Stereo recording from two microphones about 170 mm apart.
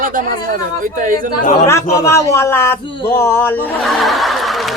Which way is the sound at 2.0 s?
15° left (ahead or behind).